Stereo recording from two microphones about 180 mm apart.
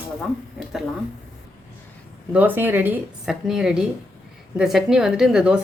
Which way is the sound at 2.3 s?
10° right (ahead or behind).